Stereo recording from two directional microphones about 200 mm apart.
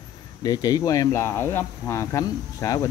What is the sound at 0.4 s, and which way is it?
Speech, 20° left (ahead or behind).